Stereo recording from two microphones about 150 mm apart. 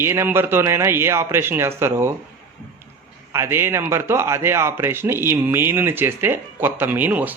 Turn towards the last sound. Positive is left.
turn(degrees=-10)  # may be behind; listen again after turning